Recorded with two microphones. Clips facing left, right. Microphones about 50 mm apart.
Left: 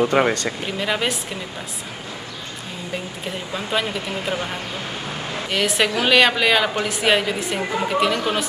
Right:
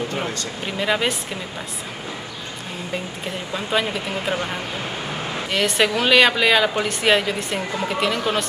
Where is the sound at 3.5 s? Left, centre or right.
Centre.